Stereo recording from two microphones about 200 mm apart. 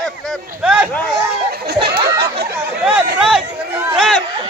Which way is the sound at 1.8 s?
55° right (ahead or behind).